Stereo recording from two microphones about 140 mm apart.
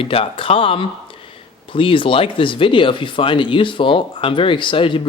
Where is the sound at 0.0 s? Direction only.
40° left (ahead or behind).